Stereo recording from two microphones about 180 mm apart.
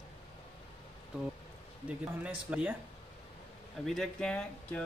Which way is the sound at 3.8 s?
Centre (ahead or behind).